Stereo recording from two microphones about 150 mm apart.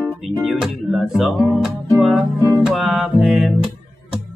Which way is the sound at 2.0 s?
Centre (ahead or behind).